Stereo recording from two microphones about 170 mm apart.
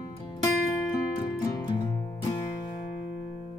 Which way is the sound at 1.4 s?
25° left (ahead or behind).